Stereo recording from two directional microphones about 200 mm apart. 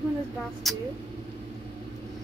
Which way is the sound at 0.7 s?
Centre (ahead or behind).